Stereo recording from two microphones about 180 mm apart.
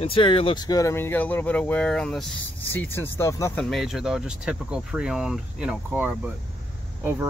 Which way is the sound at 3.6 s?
Centre (ahead or behind).